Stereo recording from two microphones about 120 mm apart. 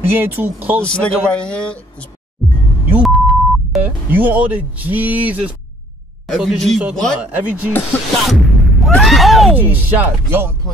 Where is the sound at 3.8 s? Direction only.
15° right (ahead or behind).